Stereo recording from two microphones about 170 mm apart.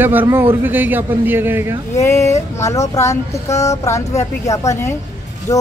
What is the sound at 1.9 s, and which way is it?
Speech, 15° left (ahead or behind).